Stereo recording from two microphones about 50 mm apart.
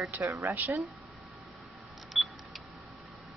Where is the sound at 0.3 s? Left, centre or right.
Right.